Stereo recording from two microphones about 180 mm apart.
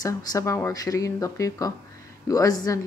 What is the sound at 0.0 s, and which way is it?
Speech, 20° left (ahead or behind).